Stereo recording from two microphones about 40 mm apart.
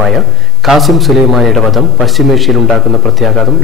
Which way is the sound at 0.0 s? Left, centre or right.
Centre.